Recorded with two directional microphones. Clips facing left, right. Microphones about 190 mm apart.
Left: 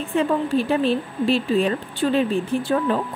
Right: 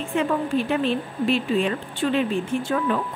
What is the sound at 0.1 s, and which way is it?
A woman's voice, 35° left (ahead or behind).